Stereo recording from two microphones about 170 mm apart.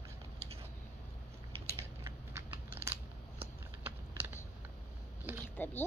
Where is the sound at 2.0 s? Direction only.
15° right (ahead or behind).